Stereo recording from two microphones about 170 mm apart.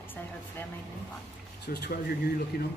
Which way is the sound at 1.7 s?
70° left (ahead or behind).